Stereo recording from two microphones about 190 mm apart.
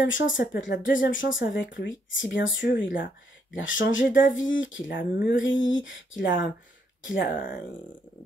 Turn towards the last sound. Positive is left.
turn(degrees=70)  # may be behind; listen again after turning